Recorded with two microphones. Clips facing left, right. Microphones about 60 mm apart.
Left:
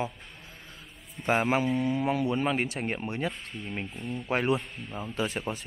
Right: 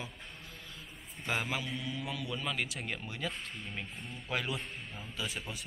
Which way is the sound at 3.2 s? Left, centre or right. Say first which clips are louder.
Left 5 dB; left.